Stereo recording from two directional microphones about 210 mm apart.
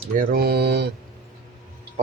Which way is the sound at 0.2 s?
45° right (ahead or behind).